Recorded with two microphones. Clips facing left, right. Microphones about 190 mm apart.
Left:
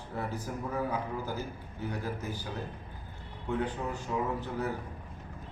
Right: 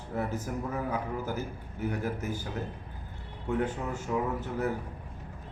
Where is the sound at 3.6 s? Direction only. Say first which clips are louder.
Right 2 dB; 45° right (ahead or behind).